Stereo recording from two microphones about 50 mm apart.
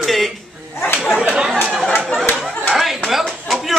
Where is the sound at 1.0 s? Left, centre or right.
Centre.